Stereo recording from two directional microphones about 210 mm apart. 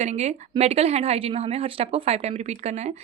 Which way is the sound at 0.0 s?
30° right (ahead or behind).